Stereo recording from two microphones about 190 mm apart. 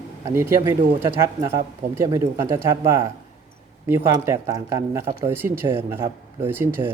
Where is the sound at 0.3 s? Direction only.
15° right (ahead or behind).